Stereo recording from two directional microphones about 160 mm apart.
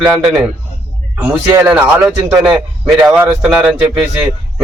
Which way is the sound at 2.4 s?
5° right (ahead or behind).